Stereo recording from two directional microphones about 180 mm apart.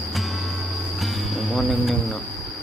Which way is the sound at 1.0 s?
Centre (ahead or behind).